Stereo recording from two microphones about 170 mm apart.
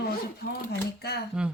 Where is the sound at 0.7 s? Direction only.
70° left (ahead or behind).